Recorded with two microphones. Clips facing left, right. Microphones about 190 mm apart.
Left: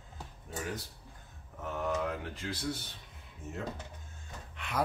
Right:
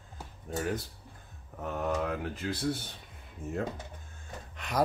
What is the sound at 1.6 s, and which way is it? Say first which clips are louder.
Mantra: right 2 dB; 45° right (ahead or behind).